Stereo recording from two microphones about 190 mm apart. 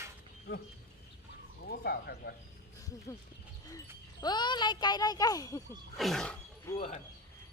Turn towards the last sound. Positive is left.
turn(degrees=35)  # may be behind; listen again after turning